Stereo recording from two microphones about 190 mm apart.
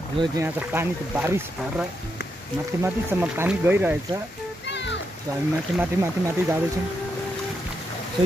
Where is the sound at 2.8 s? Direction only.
10° right (ahead or behind).